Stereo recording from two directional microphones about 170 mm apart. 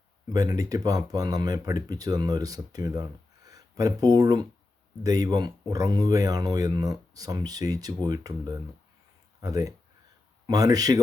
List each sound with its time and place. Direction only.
0.3 s speech: 20° right (ahead or behind)